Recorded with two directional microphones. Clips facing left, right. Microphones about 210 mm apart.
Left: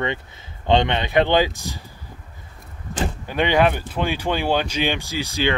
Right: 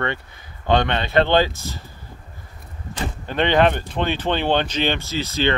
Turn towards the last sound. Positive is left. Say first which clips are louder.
# right 1 dB
turn(degrees=10)  # may be behind; listen again after turning